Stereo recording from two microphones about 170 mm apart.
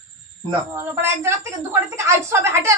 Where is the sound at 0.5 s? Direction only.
15° right (ahead or behind).